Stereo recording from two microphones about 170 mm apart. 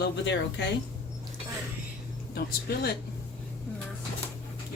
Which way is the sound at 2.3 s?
65° left (ahead or behind).